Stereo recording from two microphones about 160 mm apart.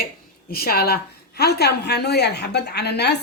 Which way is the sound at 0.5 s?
75° left (ahead or behind).